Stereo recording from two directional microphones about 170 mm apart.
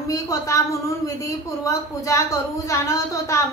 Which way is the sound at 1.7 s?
20° left (ahead or behind).